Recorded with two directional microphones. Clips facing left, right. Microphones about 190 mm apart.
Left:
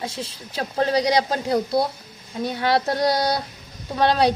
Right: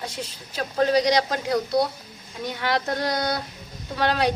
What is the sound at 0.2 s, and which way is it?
A woman's voice, 30° left (ahead or behind).